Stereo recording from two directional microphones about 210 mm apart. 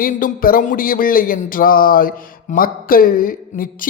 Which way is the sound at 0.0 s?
45° left (ahead or behind).